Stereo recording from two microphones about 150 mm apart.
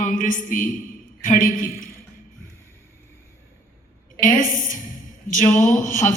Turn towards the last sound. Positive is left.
turn(degrees=55)  # may be behind; listen again after turning